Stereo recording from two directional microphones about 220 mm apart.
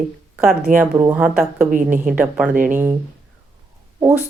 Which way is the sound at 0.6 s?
35° right (ahead or behind).